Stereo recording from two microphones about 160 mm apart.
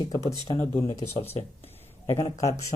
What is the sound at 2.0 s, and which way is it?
Speech, 20° left (ahead or behind).